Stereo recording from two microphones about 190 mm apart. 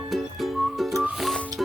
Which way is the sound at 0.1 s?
Centre (ahead or behind).